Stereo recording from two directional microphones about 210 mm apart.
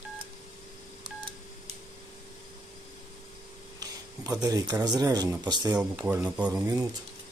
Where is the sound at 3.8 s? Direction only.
15° right (ahead or behind).